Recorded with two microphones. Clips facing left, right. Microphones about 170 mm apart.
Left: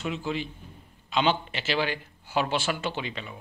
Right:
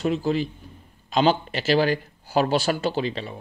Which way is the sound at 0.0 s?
40° right (ahead or behind).